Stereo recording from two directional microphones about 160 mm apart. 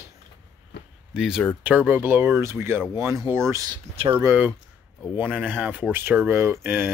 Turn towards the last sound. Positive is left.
turn(degrees=-15)  # may be behind; listen again after turning